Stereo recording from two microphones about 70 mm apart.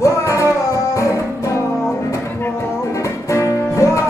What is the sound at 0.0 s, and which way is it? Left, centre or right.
Music, left.